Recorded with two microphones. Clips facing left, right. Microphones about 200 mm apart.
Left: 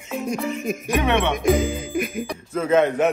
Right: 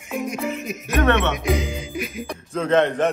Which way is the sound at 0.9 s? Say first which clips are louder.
Right 2 dB; 15° left (ahead or behind).